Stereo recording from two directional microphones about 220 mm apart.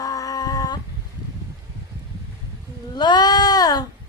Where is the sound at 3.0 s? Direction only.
20° left (ahead or behind).